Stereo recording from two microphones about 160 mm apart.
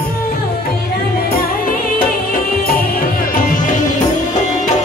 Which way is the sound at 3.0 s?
55° left (ahead or behind).